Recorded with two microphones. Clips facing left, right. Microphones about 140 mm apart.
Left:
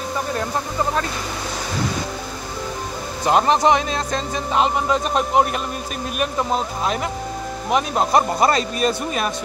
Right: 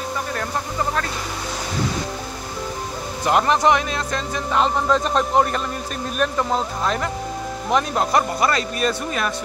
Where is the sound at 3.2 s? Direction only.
25° left (ahead or behind).